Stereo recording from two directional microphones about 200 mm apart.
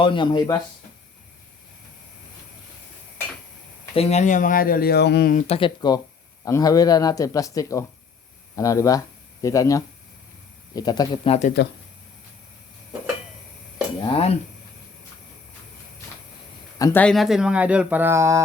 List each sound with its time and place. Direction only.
0.0 s speech: 25° left (ahead or behind)
3.9 s speech: 35° left (ahead or behind); by 5.3 s 55° left (ahead or behind)
5.3 s speech: 40° left (ahead or behind)
5.5 s speech: 20° left (ahead or behind)
14.1 s speech: 30° left (ahead or behind)
16.7 s speech: 15° left (ahead or behind)
17.0 s speech: centre (ahead or behind); by 18.4 s 15° right (ahead or behind)